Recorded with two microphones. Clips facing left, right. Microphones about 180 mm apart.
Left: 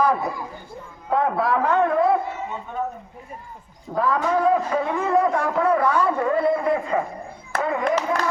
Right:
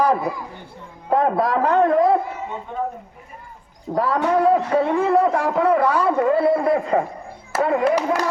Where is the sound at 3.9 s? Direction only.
35° right (ahead or behind).